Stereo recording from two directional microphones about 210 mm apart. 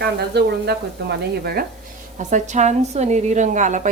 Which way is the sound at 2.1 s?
35° right (ahead or behind).